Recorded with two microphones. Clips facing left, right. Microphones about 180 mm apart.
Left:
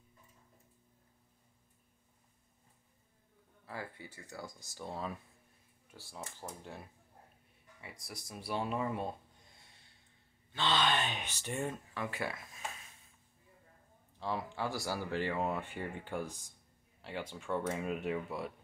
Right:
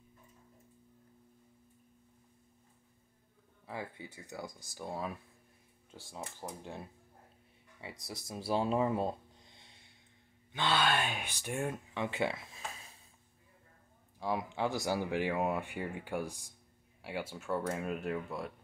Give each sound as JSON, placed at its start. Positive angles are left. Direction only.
{"t": 3.6, "sound": "speech", "side_deg": -20}
{"t": 7.8, "sound": "speech", "side_deg": -25}
{"t": 9.6, "sound": "snort", "side_deg": -20}
{"t": 10.5, "sound": "speech", "side_deg": -10}
{"t": 12.0, "sound": "a sound", "side_deg": -25}
{"t": 14.2, "sound": "speech", "side_deg": -15}